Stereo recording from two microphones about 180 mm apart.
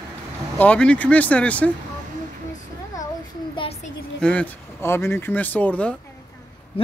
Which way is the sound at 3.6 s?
35° left (ahead or behind).